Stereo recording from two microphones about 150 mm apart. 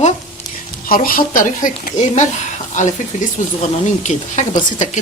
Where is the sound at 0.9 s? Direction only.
70° left (ahead or behind).